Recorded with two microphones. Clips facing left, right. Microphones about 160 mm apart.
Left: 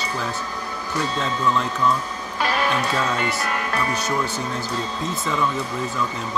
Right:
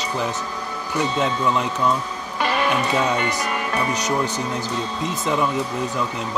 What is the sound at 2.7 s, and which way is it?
Speech, 15° right (ahead or behind).